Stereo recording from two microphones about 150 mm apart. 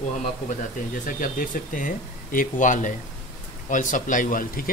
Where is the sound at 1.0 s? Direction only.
65° left (ahead or behind).